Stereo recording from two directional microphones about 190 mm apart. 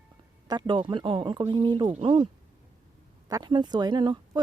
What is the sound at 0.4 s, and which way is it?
Speech, 25° right (ahead or behind).